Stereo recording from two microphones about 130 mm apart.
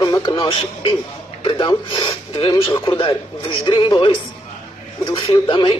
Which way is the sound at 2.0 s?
40° left (ahead or behind).